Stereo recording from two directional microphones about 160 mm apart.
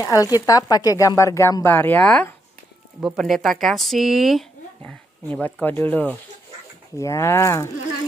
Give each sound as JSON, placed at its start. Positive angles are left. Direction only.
{"t": 0.0, "sound": "speech", "side_deg": 20}